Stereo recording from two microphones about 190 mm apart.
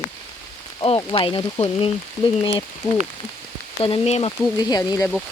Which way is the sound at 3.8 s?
30° left (ahead or behind).